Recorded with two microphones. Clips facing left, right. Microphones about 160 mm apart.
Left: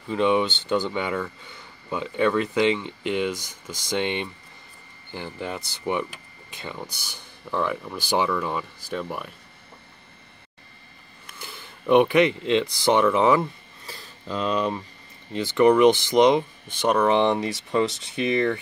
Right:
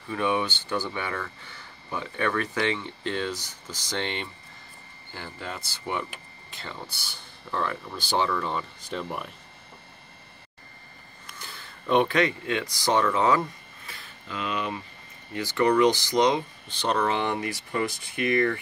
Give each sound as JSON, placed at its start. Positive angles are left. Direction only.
{"t": 0.1, "sound": "speech", "side_deg": 20}
{"t": 11.3, "sound": "speech", "side_deg": 15}
{"t": 13.8, "sound": "a sound", "side_deg": 35}
{"t": 15.3, "sound": "speech", "side_deg": 20}